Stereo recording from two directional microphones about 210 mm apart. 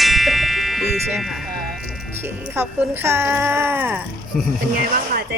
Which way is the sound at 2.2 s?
10° right (ahead or behind).